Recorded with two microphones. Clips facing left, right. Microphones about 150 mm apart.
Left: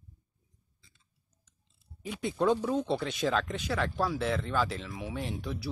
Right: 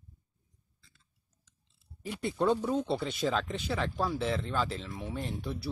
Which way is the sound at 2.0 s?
5° right (ahead or behind).